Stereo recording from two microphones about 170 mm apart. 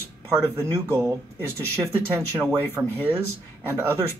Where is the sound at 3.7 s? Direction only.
15° right (ahead or behind).